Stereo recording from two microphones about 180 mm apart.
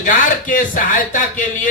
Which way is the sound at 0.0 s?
50° left (ahead or behind).